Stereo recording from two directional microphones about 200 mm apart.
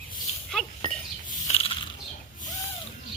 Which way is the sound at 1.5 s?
35° left (ahead or behind).